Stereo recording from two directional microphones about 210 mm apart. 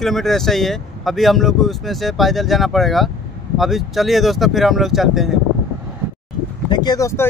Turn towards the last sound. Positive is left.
turn(degrees=15)  # may be behind; listen again after turning